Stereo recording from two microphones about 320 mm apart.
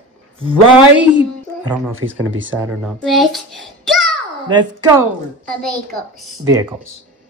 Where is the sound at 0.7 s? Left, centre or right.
Centre.